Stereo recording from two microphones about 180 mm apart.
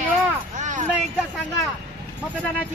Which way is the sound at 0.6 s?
40° right (ahead or behind).